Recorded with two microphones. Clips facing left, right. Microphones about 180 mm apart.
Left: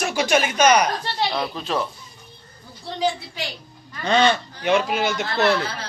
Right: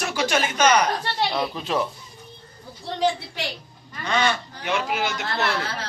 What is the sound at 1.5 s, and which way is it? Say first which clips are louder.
Speech: even; 15° right (ahead or behind).